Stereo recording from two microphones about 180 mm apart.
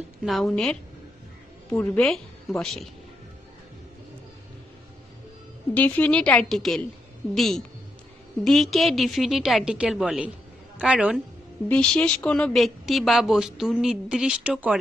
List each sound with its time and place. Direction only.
0.2 s a woman's voice: centre (ahead or behind)
5.8 s a woman's voice: 10° left (ahead or behind)
11.7 s a woman's voice: 5° left (ahead or behind)